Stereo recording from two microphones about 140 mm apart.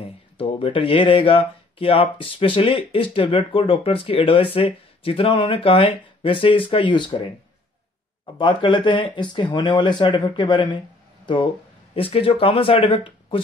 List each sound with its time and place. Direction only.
0.4 s speech: 40° left (ahead or behind)
8.4 s speech: 35° left (ahead or behind)
11.9 s speech: 45° left (ahead or behind)